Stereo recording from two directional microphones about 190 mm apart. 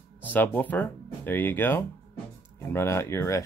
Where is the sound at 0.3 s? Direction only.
10° left (ahead or behind).